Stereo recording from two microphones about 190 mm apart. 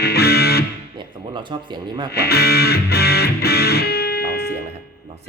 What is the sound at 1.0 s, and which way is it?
Speech, 25° right (ahead or behind).